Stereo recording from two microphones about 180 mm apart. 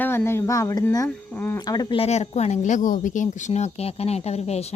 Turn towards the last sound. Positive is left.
turn(degrees=35)  # may be behind; listen again after turning